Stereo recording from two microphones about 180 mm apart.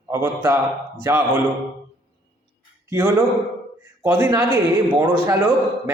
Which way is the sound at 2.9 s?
15° right (ahead or behind).